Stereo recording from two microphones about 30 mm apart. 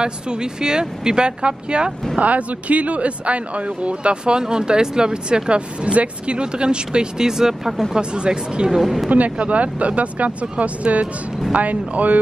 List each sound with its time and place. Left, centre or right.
0.0 s speech: right
2.1 s speech: right; by 7.8 s centre
7.9 s speech: right
8.6 s a woman's voice: centre
9.4 s speech: right